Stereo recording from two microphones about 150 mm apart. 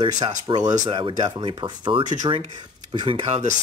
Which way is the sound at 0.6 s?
55° right (ahead or behind).